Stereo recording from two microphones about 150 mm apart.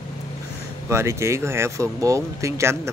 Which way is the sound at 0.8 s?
20° right (ahead or behind).